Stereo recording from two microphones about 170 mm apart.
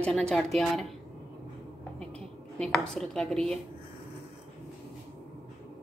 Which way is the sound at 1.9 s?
5° left (ahead or behind).